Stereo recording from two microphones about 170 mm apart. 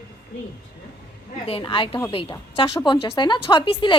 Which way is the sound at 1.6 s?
30° left (ahead or behind).